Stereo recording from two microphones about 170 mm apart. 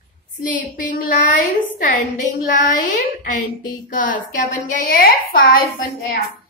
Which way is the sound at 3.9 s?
50° left (ahead or behind).